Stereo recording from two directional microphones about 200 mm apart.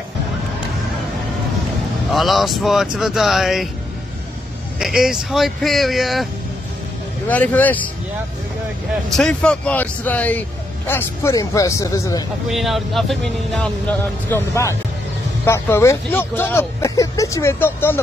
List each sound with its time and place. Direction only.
2.1 s speech: centre (ahead or behind)
4.7 s speech: centre (ahead or behind)
7.2 s speech: 10° left (ahead or behind)
9.1 s speech: 5° left (ahead or behind)
12.4 s speech: centre (ahead or behind)